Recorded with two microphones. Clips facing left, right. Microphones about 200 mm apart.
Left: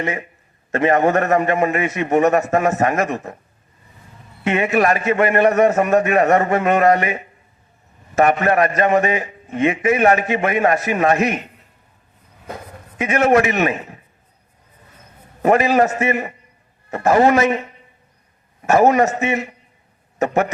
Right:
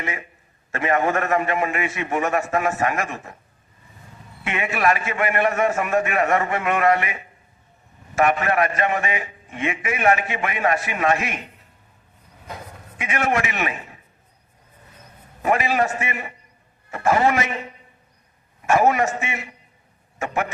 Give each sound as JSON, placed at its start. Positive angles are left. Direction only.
{"t": 0.0, "sound": "a man's voice", "side_deg": 40}
{"t": 4.4, "sound": "a man's voice", "side_deg": 40}
{"t": 13.0, "sound": "a man's voice", "side_deg": 40}
{"t": 15.4, "sound": "a man's voice", "side_deg": 40}
{"t": 18.6, "sound": "a man's voice", "side_deg": 40}